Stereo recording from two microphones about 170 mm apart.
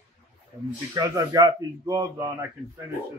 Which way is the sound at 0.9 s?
20° right (ahead or behind).